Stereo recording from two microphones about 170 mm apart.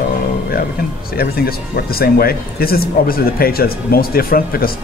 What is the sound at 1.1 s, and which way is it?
Speech, 65° left (ahead or behind).